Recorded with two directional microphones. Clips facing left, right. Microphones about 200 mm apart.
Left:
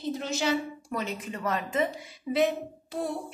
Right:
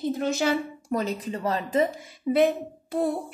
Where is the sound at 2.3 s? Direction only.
45° right (ahead or behind).